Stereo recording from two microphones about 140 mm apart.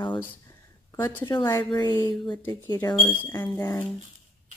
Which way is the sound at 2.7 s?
30° left (ahead or behind).